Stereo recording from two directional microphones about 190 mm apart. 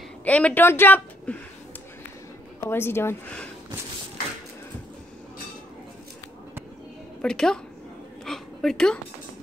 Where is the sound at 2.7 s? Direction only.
10° left (ahead or behind).